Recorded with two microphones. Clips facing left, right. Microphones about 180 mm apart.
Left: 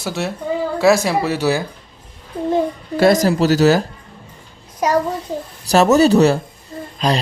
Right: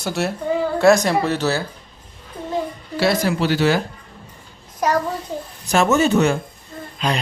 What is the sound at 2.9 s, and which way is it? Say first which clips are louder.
Speech: left 5 dB; 45° left (ahead or behind).